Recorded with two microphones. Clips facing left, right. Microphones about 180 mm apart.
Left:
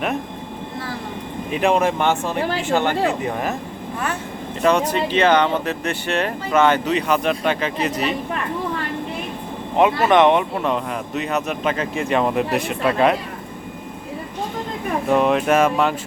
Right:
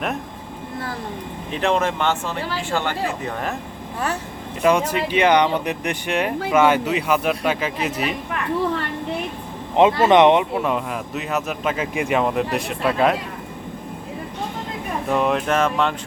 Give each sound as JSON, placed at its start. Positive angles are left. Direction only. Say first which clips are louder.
{"t": 1.5, "sound": "speech", "louder": "left 3 dB", "side_deg": 10}
{"t": 4.6, "sound": "speech", "louder": "even", "side_deg": -10}
{"t": 9.7, "sound": "speech", "louder": "right 1 dB", "side_deg": -20}
{"t": 10.5, "sound": "speech", "louder": "even", "side_deg": -5}
{"t": 15.1, "sound": "speech", "louder": "left 3 dB", "side_deg": 0}